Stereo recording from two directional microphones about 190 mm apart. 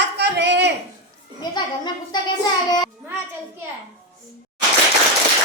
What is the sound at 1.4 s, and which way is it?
Children playing, 20° left (ahead or behind).